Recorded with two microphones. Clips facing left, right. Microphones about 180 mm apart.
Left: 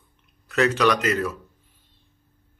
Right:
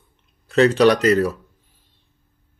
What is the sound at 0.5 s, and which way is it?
Speech, 30° right (ahead or behind).